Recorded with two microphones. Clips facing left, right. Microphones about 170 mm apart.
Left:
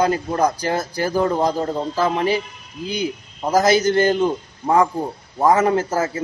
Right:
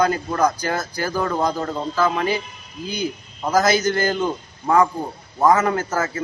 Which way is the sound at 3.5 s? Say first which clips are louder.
Left 3 dB; 30° left (ahead or behind).